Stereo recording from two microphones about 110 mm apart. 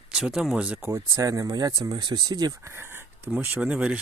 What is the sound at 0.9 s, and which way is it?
Speech, 30° right (ahead or behind).